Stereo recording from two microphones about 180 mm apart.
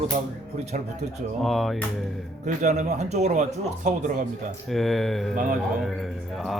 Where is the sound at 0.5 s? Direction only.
40° right (ahead or behind).